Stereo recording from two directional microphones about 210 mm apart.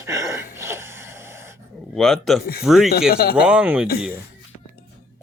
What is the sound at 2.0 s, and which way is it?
Speech, centre (ahead or behind).